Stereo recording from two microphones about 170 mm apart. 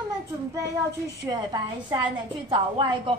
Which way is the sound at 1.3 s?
25° right (ahead or behind).